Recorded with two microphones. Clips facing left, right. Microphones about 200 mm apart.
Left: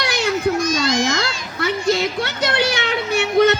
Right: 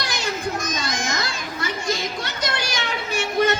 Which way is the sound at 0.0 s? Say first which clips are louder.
Left 7 dB; 65° left (ahead or behind).